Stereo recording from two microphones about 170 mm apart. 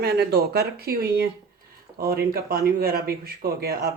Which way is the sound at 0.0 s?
70° right (ahead or behind).